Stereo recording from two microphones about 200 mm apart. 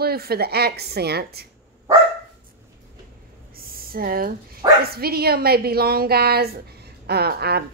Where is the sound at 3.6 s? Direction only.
45° right (ahead or behind).